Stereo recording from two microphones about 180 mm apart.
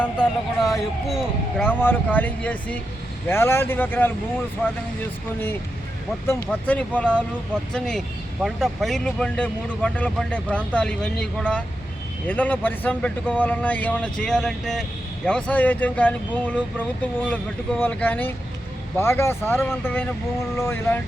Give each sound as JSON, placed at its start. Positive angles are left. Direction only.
{"t": 0.0, "sound": "a sound", "side_deg": 5}
{"t": 1.6, "sound": "speech", "side_deg": 10}
{"t": 6.2, "sound": "speech", "side_deg": 10}